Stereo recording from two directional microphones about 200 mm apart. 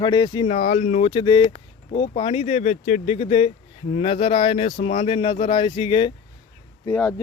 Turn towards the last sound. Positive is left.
turn(degrees=10)  # may be behind; listen again after turning